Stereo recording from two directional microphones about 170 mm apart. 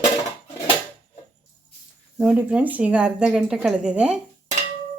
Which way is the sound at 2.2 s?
5° right (ahead or behind).